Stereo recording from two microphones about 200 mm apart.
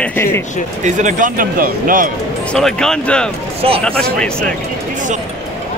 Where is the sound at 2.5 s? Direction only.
5° left (ahead or behind).